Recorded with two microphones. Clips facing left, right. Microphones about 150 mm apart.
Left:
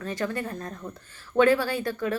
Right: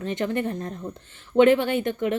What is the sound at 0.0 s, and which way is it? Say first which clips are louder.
Speech: right 4 dB; 20° right (ahead or behind).